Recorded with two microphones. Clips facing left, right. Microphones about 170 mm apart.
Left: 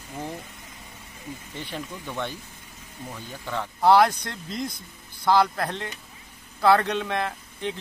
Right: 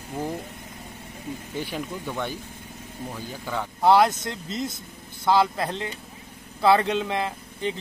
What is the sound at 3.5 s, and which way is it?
Speech, centre (ahead or behind).